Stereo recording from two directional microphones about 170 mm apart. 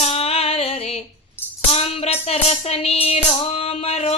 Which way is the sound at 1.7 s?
40° left (ahead or behind).